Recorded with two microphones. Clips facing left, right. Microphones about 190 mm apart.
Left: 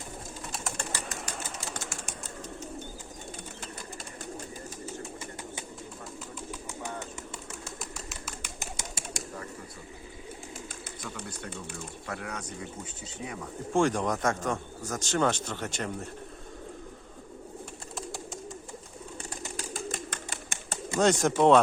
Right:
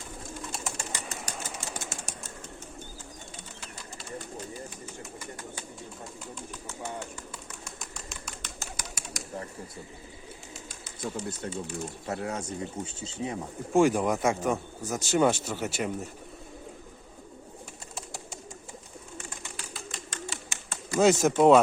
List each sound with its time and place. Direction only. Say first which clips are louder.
0.5 s bird: left 4 dB; centre (ahead or behind)
1.6 s a sound: even; 50° right (ahead or behind)
5.2 s bird: even; 20° left (ahead or behind)
7.8 s bird: left 2 dB; 5° left (ahead or behind)
8.5 s bird: left 1 dB; 25° left (ahead or behind)
11.0 s speech: right 7 dB; 30° right (ahead or behind)
13.7 s speech: right 3 dB; 10° right (ahead or behind)
19.3 s a sound: left 5 dB; 40° left (ahead or behind)
20.5 s bird: left 2 dB; 55° left (ahead or behind)
21.0 s speech: right 2 dB; 5° right (ahead or behind)